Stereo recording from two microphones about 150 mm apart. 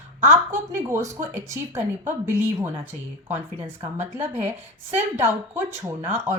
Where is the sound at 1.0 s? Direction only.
20° right (ahead or behind).